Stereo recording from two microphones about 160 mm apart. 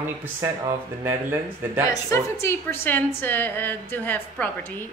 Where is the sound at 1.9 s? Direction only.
20° left (ahead or behind).